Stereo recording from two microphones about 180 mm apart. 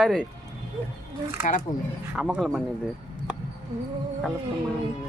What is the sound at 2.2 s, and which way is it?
Speech, centre (ahead or behind).